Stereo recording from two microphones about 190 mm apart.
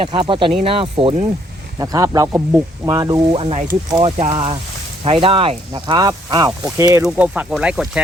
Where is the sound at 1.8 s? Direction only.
20° right (ahead or behind).